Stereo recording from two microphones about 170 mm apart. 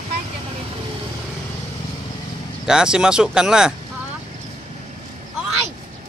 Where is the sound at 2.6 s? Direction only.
5° right (ahead or behind).